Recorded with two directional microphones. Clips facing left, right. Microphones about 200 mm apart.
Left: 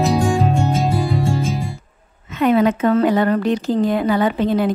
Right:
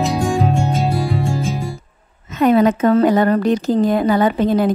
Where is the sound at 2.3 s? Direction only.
40° right (ahead or behind).